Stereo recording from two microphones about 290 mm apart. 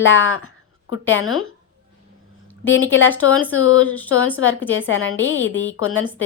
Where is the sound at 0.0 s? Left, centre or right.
Left.